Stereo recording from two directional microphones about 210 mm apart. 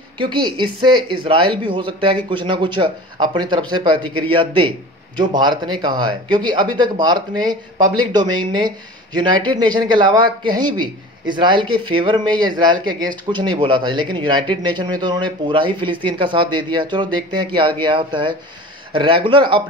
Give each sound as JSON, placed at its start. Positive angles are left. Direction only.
{"t": 0.2, "sound": "a man's voice", "side_deg": -25}